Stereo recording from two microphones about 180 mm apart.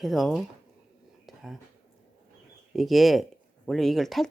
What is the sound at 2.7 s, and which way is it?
Speech, centre (ahead or behind).